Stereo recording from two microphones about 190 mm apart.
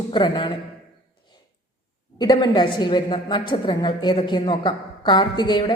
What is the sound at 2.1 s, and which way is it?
A woman's voice, 20° left (ahead or behind).